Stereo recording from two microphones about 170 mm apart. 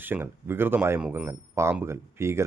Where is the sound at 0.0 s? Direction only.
10° right (ahead or behind).